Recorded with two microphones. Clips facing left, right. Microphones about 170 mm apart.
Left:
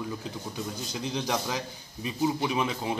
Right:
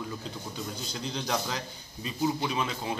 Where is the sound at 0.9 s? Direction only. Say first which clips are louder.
Left 2 dB; 15° left (ahead or behind).